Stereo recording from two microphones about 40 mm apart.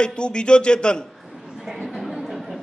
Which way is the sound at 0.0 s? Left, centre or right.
Left.